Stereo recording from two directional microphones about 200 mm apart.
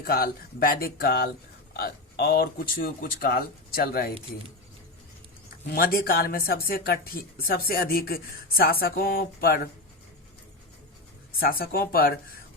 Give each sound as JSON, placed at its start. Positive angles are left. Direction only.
{"t": 0.0, "sound": "speech", "side_deg": 50}
{"t": 5.7, "sound": "speech", "side_deg": 50}
{"t": 11.4, "sound": "speech", "side_deg": 45}